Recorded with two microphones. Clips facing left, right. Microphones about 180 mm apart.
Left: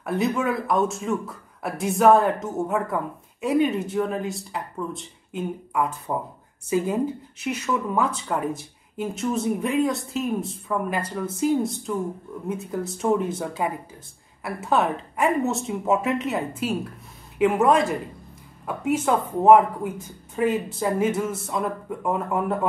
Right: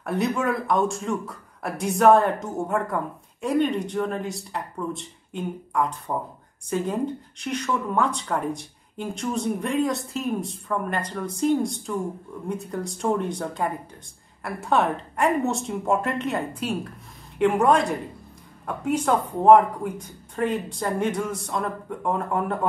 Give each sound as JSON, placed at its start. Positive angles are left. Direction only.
{"t": 0.0, "sound": "speech", "side_deg": 0}